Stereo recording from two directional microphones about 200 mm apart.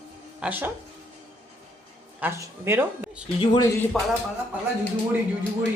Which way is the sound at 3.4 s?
20° left (ahead or behind).